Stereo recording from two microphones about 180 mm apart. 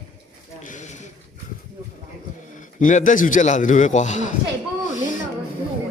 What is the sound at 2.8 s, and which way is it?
A man's voice, 45° left (ahead or behind).